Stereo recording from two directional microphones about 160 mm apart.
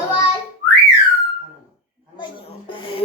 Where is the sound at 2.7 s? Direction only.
30° left (ahead or behind).